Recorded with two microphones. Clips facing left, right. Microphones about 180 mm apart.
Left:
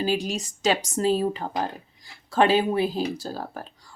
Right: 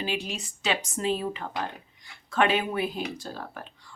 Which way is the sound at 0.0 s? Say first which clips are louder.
Left 6 dB; 40° left (ahead or behind).